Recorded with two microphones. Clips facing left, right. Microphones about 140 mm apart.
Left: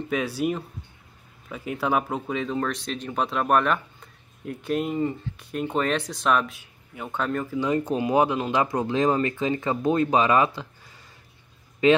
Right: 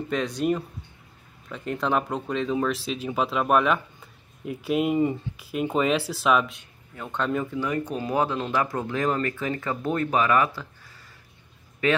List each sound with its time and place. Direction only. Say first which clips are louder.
0.1 s speech: right 1 dB; 5° left (ahead or behind)
7.6 s speech: left 4 dB; 25° left (ahead or behind)
11.8 s speech: left 5 dB; 20° left (ahead or behind)